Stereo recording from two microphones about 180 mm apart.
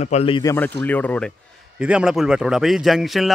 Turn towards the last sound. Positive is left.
turn(degrees=0)  # may be behind; listen again after turning